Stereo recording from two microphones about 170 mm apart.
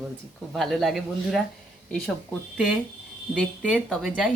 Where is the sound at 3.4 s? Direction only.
5° left (ahead or behind).